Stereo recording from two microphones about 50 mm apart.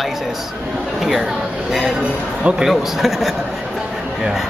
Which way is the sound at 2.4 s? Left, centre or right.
Right.